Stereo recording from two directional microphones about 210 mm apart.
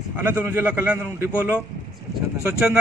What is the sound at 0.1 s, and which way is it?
A man's voice, 10° right (ahead or behind).